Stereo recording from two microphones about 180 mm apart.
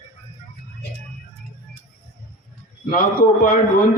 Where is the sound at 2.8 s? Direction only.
55° left (ahead or behind).